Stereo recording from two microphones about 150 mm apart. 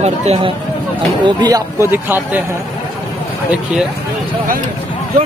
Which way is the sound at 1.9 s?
15° right (ahead or behind).